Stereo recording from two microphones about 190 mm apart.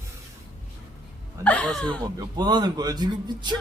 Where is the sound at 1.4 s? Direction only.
5° left (ahead or behind).